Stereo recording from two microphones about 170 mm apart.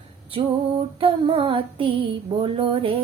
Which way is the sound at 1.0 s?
35° right (ahead or behind).